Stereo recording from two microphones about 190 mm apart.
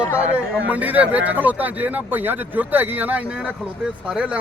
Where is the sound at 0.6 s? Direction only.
10° right (ahead or behind).